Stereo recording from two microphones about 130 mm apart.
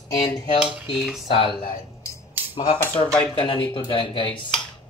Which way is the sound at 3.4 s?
35° left (ahead or behind).